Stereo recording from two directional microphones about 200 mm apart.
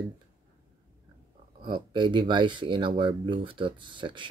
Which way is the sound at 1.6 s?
25° right (ahead or behind).